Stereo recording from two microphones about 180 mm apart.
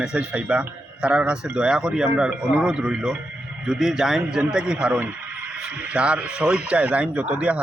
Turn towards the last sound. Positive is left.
turn(degrees=-5)  # may be behind; listen again after turning